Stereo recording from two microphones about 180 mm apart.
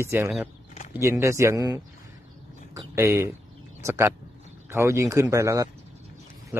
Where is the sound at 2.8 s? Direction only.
15° right (ahead or behind).